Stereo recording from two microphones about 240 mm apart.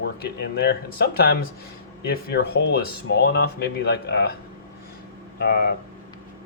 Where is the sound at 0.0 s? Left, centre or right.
Left.